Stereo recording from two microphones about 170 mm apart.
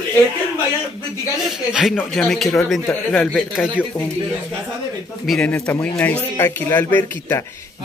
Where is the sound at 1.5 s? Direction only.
Centre (ahead or behind).